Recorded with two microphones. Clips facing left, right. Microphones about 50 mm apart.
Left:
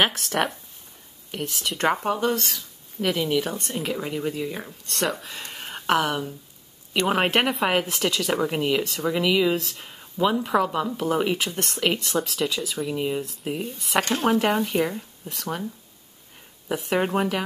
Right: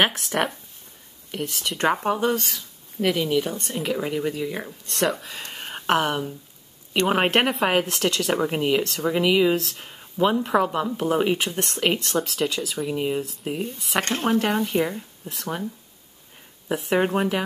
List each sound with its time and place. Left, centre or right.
0.0 s speech: centre